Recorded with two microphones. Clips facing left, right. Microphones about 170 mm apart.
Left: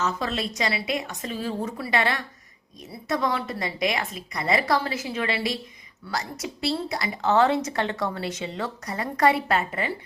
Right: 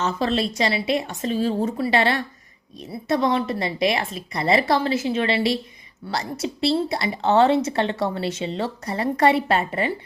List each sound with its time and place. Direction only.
0.0 s a woman's voice: 30° right (ahead or behind)